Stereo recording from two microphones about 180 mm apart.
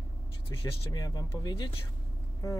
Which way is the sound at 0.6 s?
20° left (ahead or behind).